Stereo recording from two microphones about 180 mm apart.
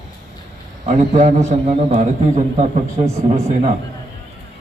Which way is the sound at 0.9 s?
40° right (ahead or behind).